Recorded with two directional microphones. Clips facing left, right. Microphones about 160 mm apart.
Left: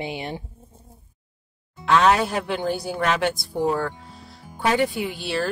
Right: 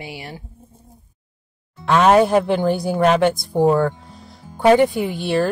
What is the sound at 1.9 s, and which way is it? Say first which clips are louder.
Speech: right 5 dB; 50° right (ahead or behind).